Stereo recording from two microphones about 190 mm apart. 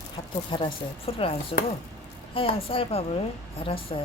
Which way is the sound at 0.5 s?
30° left (ahead or behind).